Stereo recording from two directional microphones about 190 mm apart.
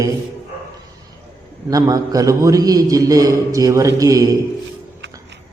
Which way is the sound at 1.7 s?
20° right (ahead or behind).